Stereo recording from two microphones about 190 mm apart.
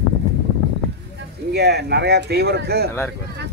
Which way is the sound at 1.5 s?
60° right (ahead or behind).